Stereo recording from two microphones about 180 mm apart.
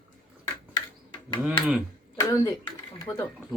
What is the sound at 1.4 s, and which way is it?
Speech, 5° right (ahead or behind).